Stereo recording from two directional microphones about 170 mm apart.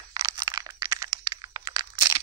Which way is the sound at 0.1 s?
25° right (ahead or behind).